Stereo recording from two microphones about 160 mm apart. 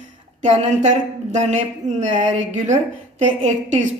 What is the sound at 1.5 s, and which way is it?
A woman's voice, 50° right (ahead or behind).